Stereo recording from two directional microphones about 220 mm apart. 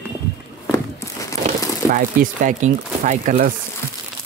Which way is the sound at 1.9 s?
35° right (ahead or behind).